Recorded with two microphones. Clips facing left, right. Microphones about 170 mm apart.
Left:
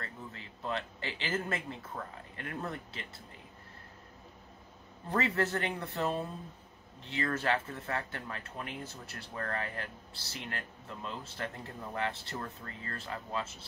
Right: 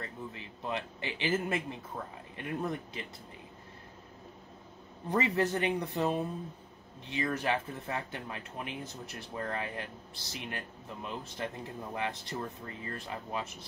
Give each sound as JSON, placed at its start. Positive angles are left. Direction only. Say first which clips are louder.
{"t": 0.0, "sound": "speech", "louder": "right 3 dB", "side_deg": -15}
{"t": 5.1, "sound": "speech", "louder": "right 2 dB", "side_deg": -15}